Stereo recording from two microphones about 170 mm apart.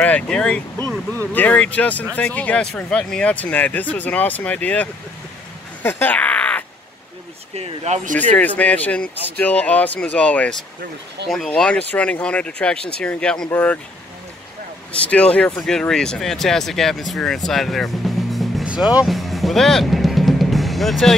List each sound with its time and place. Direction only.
0.0 s speech: 5° left (ahead or behind)
5.8 s crow: 10° left (ahead or behind)
7.5 s speech: 40° right (ahead or behind)
8.2 s speech: 10° left (ahead or behind)
14.9 s speech: 5° left (ahead or behind)